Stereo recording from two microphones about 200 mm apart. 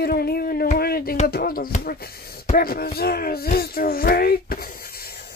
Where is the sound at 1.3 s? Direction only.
45° left (ahead or behind).